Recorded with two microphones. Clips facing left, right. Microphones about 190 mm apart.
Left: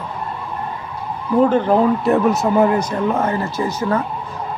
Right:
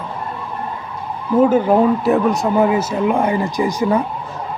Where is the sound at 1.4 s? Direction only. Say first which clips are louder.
Right 2 dB; 10° right (ahead or behind).